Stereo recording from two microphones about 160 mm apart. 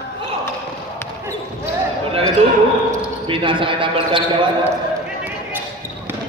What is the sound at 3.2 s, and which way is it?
Speech, 30° right (ahead or behind).